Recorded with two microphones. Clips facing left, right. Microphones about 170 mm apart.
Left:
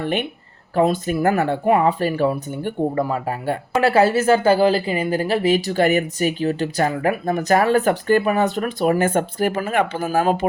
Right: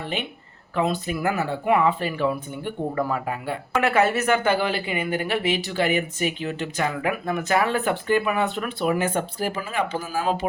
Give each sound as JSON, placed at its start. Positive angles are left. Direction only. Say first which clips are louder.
{"t": 0.0, "sound": "speech", "louder": "left 7 dB", "side_deg": 55}
{"t": 1.6, "sound": "speech", "louder": "left 2 dB", "side_deg": 40}
{"t": 3.8, "sound": "speech", "louder": "left 5 dB", "side_deg": 35}